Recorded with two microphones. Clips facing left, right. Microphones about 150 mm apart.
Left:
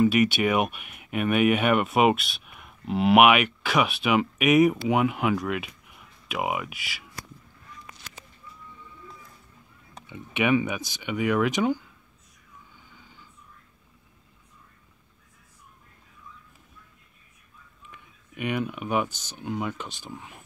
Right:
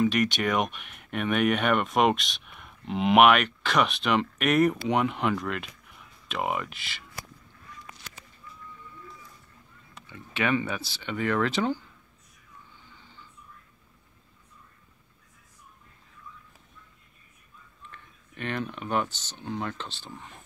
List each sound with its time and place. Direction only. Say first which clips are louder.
0.0 s speech: left 4 dB; 5° left (ahead or behind)
10.0 s speech: left 4 dB; 20° left (ahead or behind)
17.8 s speech: even; 10° left (ahead or behind)